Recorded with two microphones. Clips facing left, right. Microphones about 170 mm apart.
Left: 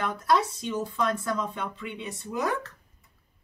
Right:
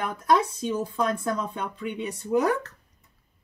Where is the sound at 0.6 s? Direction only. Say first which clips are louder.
Right 2 dB; 35° right (ahead or behind).